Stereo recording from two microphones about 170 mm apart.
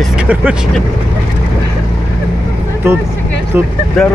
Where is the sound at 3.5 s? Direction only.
10° right (ahead or behind).